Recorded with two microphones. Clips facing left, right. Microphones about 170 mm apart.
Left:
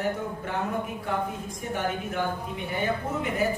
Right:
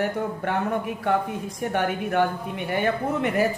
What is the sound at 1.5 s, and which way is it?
Speech, 70° right (ahead or behind).